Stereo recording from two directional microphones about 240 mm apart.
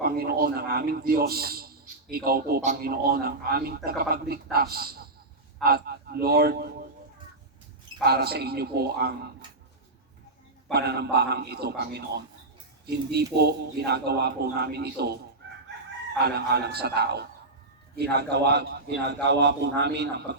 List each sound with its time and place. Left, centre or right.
0.0 s a man's voice: right
8.0 s a man's voice: right
10.7 s a man's voice: right